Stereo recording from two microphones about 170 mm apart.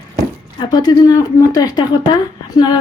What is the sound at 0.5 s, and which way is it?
A woman's voice, 25° left (ahead or behind).